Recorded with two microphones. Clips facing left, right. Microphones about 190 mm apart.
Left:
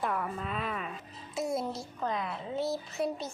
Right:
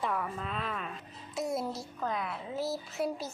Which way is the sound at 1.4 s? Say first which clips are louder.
Left 1 dB; centre (ahead or behind).